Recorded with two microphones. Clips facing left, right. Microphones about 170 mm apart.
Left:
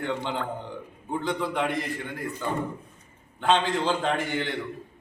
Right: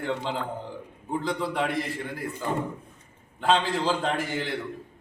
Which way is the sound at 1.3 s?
5° right (ahead or behind).